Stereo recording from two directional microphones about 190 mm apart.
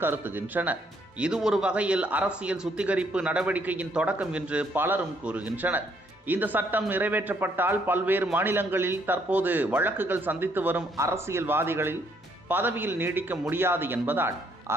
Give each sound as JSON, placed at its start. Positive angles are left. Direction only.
{"t": 0.0, "sound": "speech", "side_deg": -10}